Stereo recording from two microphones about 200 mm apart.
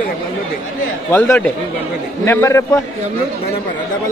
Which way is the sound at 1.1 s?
10° left (ahead or behind).